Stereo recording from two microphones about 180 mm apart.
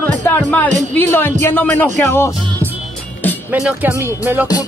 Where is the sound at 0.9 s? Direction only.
10° left (ahead or behind).